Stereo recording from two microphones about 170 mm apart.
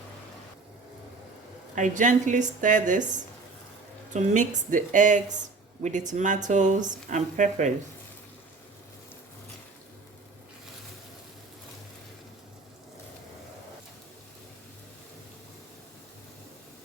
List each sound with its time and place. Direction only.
1.7 s a woman's voice: 50° right (ahead or behind)
4.1 s a woman's voice: 45° right (ahead or behind)